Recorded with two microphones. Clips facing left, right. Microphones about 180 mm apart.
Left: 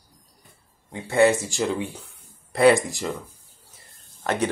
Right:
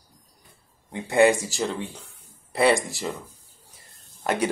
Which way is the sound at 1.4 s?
Centre (ahead or behind).